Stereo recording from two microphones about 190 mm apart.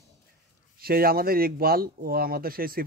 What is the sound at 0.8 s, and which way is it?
Speech, 50° right (ahead or behind).